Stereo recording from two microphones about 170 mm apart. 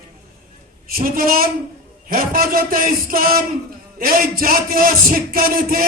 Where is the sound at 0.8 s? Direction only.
55° right (ahead or behind).